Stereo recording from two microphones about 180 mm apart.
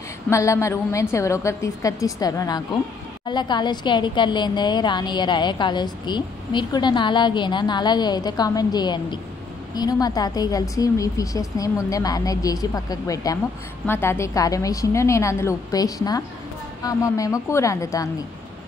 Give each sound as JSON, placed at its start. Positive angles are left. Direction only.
{"t": 0.3, "sound": "a woman's voice", "side_deg": 15}